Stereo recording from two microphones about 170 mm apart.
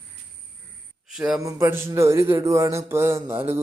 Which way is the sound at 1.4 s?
20° right (ahead or behind).